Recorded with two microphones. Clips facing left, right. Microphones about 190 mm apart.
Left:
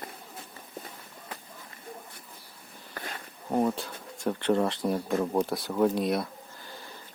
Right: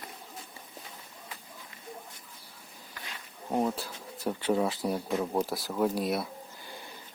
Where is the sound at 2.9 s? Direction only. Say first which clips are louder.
Left 7 dB; 50° left (ahead or behind).